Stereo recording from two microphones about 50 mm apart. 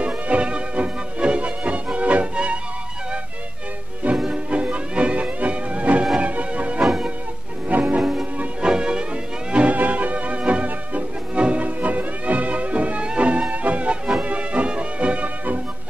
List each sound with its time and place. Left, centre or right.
0.0 s music: right
4.3 s music: right